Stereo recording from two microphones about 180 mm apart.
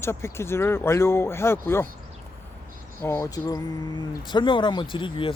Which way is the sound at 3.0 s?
15° left (ahead or behind).